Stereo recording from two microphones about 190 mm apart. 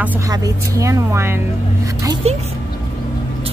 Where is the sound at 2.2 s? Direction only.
35° right (ahead or behind).